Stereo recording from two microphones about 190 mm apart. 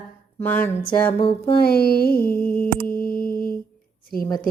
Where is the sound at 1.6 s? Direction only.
55° left (ahead or behind).